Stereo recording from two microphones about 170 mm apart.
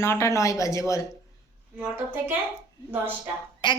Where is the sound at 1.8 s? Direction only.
10° right (ahead or behind).